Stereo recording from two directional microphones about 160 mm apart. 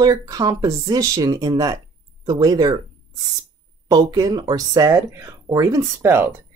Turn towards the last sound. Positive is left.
turn(degrees=-15)  # may be behind; listen again after turning